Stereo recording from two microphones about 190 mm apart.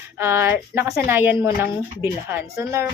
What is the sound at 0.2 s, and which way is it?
Speech, 15° right (ahead or behind).